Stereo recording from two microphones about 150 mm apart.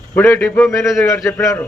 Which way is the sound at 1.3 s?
15° left (ahead or behind).